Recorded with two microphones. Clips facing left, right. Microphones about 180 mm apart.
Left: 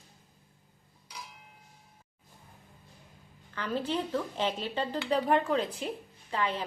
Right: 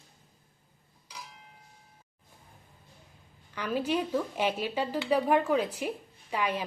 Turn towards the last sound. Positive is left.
turn(degrees=-10)  # may be behind; listen again after turning